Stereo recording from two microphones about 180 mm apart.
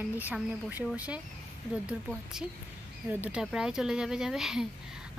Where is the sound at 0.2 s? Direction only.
10° right (ahead or behind).